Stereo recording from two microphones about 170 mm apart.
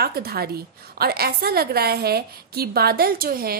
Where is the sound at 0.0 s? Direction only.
65° right (ahead or behind).